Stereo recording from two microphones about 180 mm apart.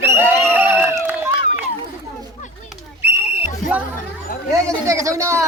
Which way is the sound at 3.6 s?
45° left (ahead or behind).